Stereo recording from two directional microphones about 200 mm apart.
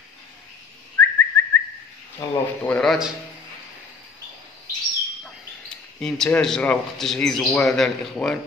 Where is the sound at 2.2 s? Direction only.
15° left (ahead or behind).